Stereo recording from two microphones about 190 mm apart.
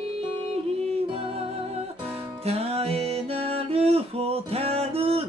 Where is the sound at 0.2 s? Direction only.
35° right (ahead or behind).